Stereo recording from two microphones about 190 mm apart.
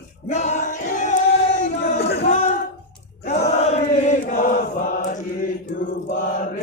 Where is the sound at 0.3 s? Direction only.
40° left (ahead or behind).